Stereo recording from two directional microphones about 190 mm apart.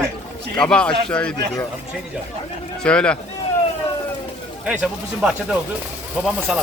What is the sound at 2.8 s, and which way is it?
Speech, 5° left (ahead or behind).